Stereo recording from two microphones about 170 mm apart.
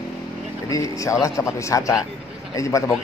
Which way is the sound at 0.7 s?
20° left (ahead or behind).